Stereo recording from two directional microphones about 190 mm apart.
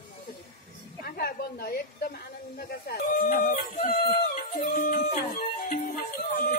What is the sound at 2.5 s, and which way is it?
Speech, 50° left (ahead or behind).